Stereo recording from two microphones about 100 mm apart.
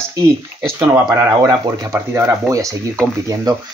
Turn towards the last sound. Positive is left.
turn(degrees=-35)  # may be behind; listen again after turning